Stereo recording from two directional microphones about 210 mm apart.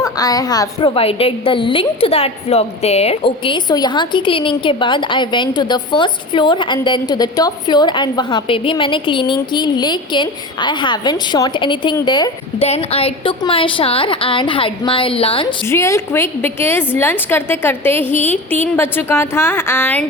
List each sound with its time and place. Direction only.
0.0 s a woman's voice: 15° left (ahead or behind)
15.6 s a woman's voice: 15° left (ahead or behind)